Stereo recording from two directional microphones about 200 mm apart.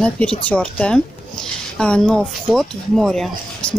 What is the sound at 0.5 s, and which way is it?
Speech, 5° left (ahead or behind).